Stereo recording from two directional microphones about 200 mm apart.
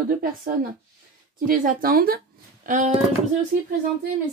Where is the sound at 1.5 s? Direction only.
45° right (ahead or behind).